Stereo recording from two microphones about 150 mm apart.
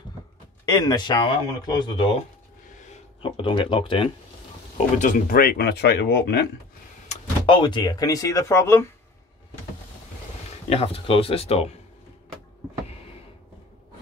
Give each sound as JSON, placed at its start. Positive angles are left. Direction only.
{"t": 0.7, "sound": "speech", "side_deg": 25}
{"t": 3.2, "sound": "speech", "side_deg": 35}
{"t": 4.9, "sound": "speech", "side_deg": 60}
{"t": 7.4, "sound": "speech", "side_deg": 35}
{"t": 10.7, "sound": "speech", "side_deg": 40}